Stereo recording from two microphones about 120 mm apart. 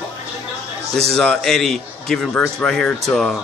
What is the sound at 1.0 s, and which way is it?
A man's voice, 5° left (ahead or behind).